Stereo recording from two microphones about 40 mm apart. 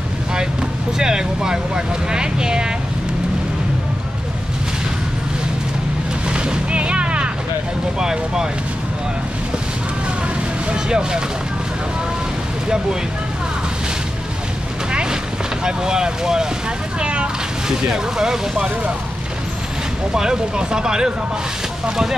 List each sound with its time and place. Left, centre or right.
0.9 s speech: centre
6.2 s a sound: right
8.0 s speech: centre
10.7 s speech: centre
14.9 s a sound: right
15.6 s speech: centre
17.0 s speech: right
17.6 s speech: centre
20.1 s speech: centre